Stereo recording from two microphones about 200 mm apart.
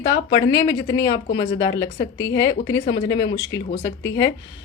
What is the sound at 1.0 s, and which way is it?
Speech, 20° left (ahead or behind).